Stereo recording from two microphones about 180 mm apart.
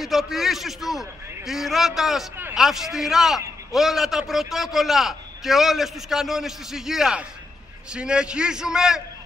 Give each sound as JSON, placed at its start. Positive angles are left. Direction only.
{"t": 0.0, "sound": "a man's voice", "side_deg": 0}